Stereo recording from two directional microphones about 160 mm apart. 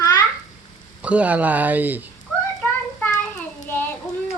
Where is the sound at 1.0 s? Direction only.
10° right (ahead or behind).